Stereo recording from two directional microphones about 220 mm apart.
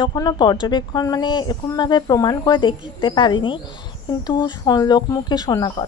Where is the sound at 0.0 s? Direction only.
20° left (ahead or behind).